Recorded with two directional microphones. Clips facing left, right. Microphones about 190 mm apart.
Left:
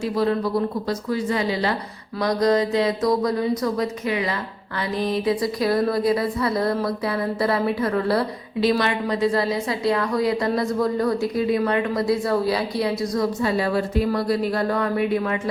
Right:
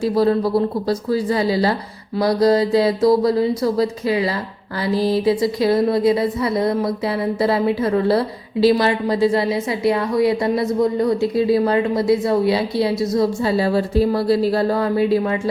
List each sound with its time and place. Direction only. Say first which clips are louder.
0.0 s a woman's voice: right 5 dB; 35° right (ahead or behind)